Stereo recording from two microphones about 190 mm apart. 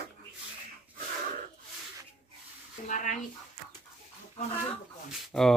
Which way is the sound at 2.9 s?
40° left (ahead or behind).